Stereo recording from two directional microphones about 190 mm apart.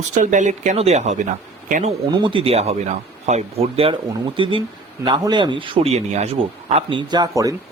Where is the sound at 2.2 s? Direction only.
25° right (ahead or behind).